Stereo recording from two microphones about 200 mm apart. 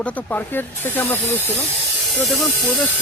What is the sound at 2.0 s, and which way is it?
Speech, centre (ahead or behind).